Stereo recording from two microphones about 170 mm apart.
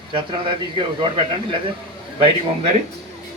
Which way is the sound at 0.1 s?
30° right (ahead or behind).